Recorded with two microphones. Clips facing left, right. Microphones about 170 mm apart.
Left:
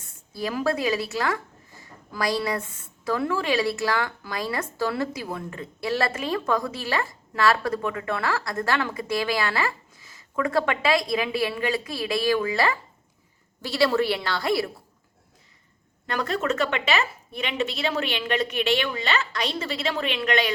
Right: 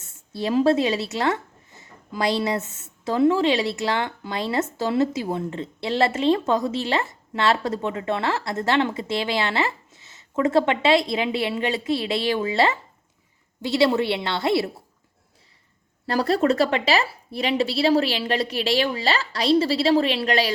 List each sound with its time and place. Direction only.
0.3 s speech: 25° right (ahead or behind)
16.0 s a woman's voice: 35° right (ahead or behind)